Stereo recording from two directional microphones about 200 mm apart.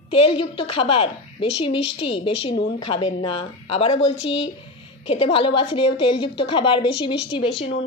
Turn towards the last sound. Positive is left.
turn(degrees=30)  # may be behind; listen again after turning